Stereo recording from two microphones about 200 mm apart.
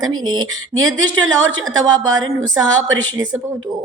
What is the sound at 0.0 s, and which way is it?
Speech, 90° right.